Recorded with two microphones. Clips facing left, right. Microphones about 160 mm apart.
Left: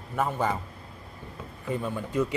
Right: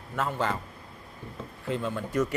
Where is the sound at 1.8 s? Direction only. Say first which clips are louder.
Even; 15° left (ahead or behind).